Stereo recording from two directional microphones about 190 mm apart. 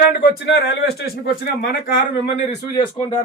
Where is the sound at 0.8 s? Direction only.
55° left (ahead or behind).